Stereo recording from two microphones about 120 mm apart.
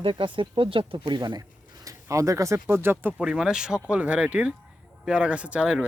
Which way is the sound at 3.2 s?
5° right (ahead or behind).